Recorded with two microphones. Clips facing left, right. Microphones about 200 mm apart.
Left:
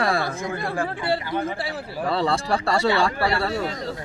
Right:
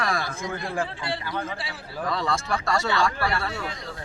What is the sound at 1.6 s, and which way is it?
Speech, 60° left (ahead or behind).